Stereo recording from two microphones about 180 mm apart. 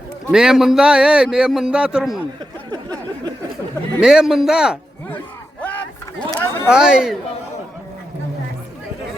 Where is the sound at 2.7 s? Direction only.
20° right (ahead or behind).